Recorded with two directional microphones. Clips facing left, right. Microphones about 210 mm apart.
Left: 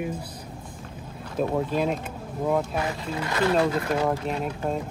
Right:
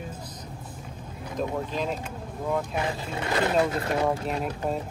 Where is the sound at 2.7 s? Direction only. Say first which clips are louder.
Left 1 dB; 25° right (ahead or behind).